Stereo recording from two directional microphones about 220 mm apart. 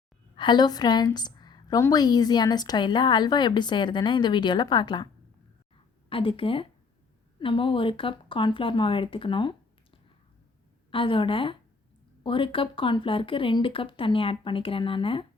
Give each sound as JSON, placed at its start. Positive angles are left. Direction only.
{"t": 0.3, "sound": "a woman's voice", "side_deg": 20}
{"t": 6.1, "sound": "a woman's voice", "side_deg": 25}
{"t": 10.9, "sound": "a woman's voice", "side_deg": 25}